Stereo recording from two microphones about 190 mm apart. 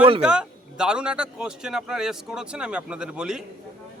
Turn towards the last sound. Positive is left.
turn(degrees=-5)  # may be behind; listen again after turning